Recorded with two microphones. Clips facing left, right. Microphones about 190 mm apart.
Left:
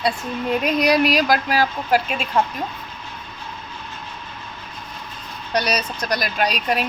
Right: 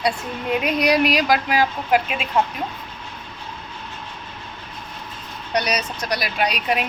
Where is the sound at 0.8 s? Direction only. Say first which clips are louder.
Left 1 dB; 10° right (ahead or behind).